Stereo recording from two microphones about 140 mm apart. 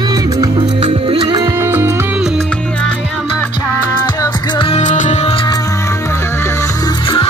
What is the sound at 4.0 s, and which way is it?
Music, 35° left (ahead or behind).